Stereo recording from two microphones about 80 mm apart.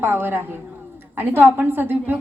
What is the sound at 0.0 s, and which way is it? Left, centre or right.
A woman's voice, right.